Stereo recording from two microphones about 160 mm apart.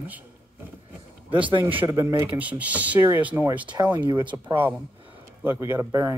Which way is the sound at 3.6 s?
30° right (ahead or behind).